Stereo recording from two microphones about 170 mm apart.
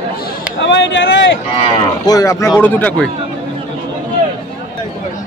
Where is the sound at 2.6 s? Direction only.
10° left (ahead or behind).